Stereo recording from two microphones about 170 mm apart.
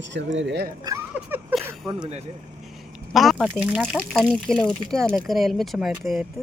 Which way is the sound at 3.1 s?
Centre (ahead or behind).